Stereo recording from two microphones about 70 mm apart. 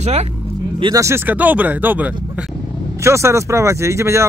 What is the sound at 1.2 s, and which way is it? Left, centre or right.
Speech, right.